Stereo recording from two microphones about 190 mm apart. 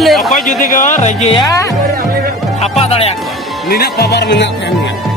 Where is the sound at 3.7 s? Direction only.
55° left (ahead or behind).